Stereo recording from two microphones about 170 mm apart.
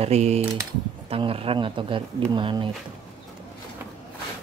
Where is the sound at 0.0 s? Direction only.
40° right (ahead or behind).